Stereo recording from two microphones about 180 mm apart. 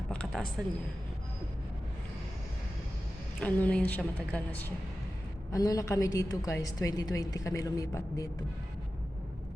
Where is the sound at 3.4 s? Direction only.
10° left (ahead or behind).